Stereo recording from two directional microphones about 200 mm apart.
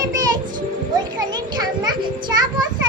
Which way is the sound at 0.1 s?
20° right (ahead or behind).